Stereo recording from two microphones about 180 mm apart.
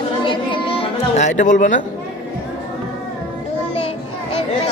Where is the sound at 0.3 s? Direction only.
30° left (ahead or behind); by 1.7 s 45° left (ahead or behind).